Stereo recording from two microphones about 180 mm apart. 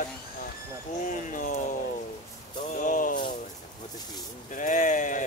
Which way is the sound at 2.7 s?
45° left (ahead or behind).